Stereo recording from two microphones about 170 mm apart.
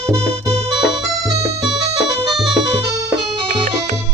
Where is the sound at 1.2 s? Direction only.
25° right (ahead or behind).